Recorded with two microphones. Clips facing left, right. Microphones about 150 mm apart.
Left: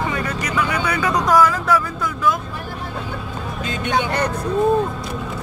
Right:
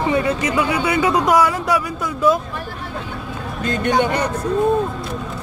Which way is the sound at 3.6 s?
55° right (ahead or behind).